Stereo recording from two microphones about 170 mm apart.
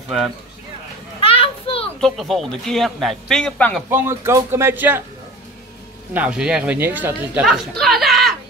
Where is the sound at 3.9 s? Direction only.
15° right (ahead or behind).